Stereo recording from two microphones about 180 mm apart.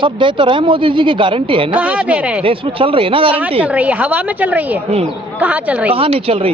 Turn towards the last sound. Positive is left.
turn(degrees=-30)  # may be behind; listen again after turning